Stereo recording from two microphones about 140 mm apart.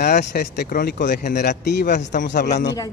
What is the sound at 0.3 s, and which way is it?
Speech, 90° left.